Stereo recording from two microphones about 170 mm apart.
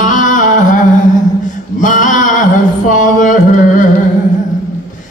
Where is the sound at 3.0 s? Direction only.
50° left (ahead or behind).